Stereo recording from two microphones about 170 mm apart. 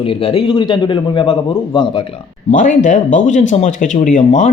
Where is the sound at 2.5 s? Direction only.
50° left (ahead or behind).